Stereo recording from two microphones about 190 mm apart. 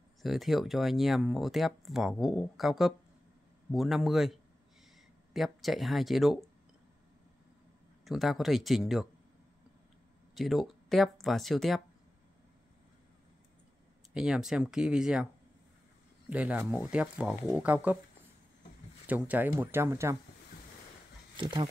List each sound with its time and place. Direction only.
0.2 s speech: centre (ahead or behind)
8.0 s speech: centre (ahead or behind)
10.3 s speech: centre (ahead or behind)
14.1 s speech: 5° right (ahead or behind)
16.3 s speech: 5° right (ahead or behind)
19.0 s speech: 10° right (ahead or behind)
21.4 s speech: 25° right (ahead or behind)